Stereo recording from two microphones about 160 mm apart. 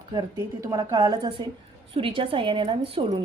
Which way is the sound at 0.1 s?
25° right (ahead or behind).